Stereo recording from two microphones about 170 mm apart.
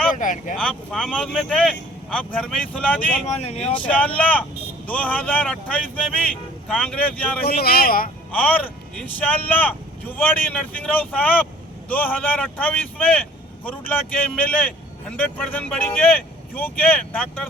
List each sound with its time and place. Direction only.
0.1 s speech: 50° left (ahead or behind)
0.5 s speech: 5° left (ahead or behind)
3.2 s speech: 40° left (ahead or behind)
3.7 s speech: 10° left (ahead or behind)
7.4 s speech: 65° left (ahead or behind)
8.3 s speech: 10° left (ahead or behind)